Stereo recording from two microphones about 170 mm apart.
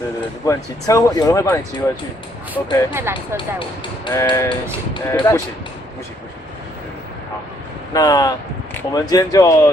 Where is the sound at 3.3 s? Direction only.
30° left (ahead or behind).